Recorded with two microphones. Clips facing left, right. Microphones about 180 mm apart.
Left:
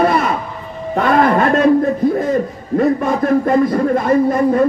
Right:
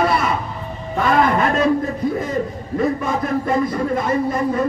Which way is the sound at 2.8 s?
50° left (ahead or behind).